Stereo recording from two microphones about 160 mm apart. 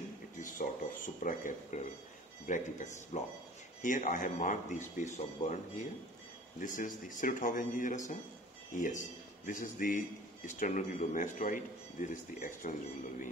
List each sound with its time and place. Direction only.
0.4 s a sound: 55° left (ahead or behind)
2.4 s speech: 50° left (ahead or behind)
6.6 s a man's voice: 55° left (ahead or behind)